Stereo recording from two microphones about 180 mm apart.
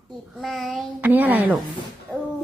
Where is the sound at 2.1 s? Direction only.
10° left (ahead or behind).